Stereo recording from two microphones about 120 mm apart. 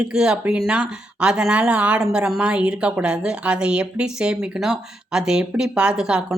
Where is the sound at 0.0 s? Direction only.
5° right (ahead or behind).